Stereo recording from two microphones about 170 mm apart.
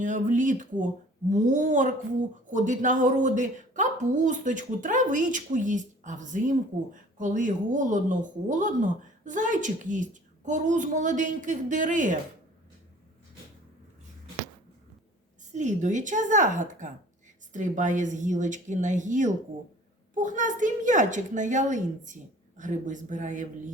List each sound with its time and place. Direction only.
0.0 s a woman's voice: 50° right (ahead or behind)
15.5 s a woman's voice: 45° right (ahead or behind)